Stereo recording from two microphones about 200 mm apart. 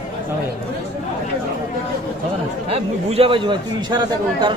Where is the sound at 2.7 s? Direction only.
30° right (ahead or behind).